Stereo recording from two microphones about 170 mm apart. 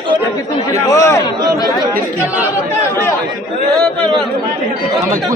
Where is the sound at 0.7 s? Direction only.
20° left (ahead or behind).